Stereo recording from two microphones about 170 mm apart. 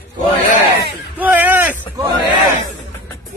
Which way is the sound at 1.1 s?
10° right (ahead or behind).